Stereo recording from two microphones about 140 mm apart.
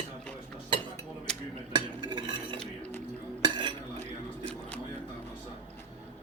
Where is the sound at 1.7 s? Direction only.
35° right (ahead or behind).